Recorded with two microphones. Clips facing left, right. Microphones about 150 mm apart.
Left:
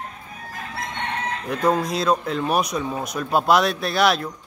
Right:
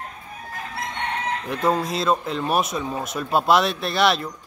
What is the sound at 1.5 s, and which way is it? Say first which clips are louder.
Chicken: left 2 dB; centre (ahead or behind).